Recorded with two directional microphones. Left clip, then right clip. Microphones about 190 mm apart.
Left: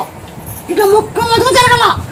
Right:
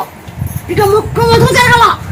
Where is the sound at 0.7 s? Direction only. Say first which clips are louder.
Even; 30° left (ahead or behind).